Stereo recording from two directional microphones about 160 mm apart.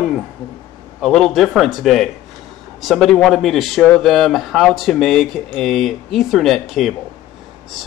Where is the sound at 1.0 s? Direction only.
Centre (ahead or behind).